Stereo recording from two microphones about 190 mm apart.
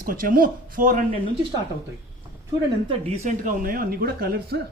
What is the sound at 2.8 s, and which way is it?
Speech, 40° right (ahead or behind).